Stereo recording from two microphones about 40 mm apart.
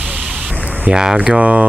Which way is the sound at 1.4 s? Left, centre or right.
Right.